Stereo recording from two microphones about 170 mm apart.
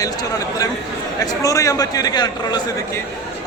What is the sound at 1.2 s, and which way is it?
A man's voice, 20° left (ahead or behind).